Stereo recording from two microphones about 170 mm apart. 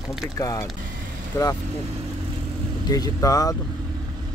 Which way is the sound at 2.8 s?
20° left (ahead or behind).